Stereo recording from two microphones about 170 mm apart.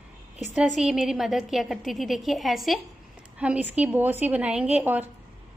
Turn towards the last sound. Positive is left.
turn(degrees=-10)  # may be behind; listen again after turning